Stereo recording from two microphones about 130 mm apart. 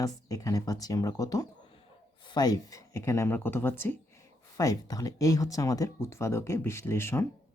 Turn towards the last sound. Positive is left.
turn(degrees=20)  # may be behind; listen again after turning